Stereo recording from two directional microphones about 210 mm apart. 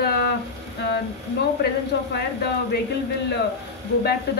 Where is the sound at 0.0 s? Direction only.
50° left (ahead or behind).